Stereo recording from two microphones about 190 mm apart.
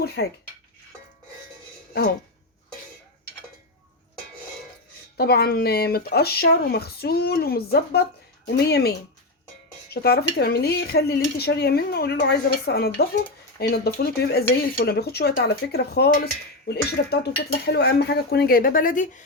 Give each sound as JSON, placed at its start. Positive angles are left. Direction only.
{"t": 0.0, "sound": "speech", "side_deg": 60}
{"t": 5.1, "sound": "speech", "side_deg": 55}